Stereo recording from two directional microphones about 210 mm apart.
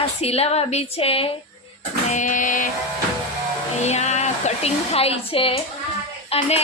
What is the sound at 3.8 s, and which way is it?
A woman's voice, 30° left (ahead or behind).